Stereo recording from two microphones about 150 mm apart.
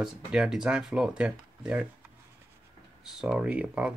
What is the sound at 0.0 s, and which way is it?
Speech, centre (ahead or behind).